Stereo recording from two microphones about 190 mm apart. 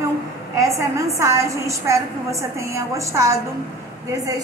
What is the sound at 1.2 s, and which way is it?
A woman's voice, 15° right (ahead or behind).